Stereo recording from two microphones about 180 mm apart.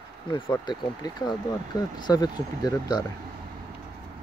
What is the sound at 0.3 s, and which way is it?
Speech, 25° left (ahead or behind).